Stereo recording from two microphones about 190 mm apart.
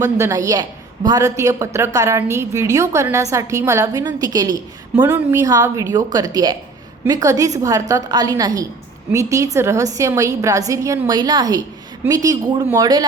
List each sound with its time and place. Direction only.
0.0 s a woman's voice: 15° right (ahead or behind)